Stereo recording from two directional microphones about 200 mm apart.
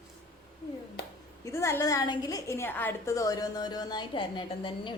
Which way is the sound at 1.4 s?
15° left (ahead or behind).